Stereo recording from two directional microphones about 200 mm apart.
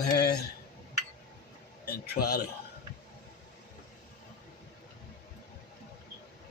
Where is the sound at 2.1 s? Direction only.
50° left (ahead or behind).